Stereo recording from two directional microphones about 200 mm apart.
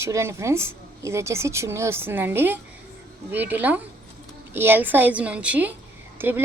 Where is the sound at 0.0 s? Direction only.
15° right (ahead or behind).